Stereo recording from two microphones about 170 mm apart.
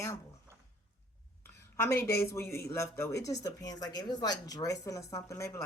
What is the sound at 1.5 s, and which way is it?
Speech, 15° left (ahead or behind).